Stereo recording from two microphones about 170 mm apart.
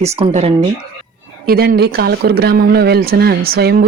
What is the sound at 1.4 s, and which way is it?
Speech, 60° right (ahead or behind).